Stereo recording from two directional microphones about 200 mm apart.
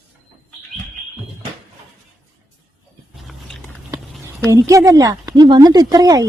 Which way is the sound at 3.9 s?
Centre (ahead or behind).